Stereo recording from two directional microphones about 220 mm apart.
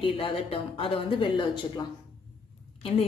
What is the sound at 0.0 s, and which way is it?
Speech, 25° left (ahead or behind).